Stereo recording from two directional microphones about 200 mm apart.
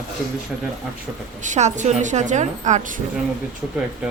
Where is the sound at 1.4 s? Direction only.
35° right (ahead or behind).